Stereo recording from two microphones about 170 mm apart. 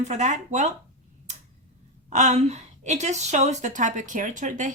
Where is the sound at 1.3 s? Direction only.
45° right (ahead or behind).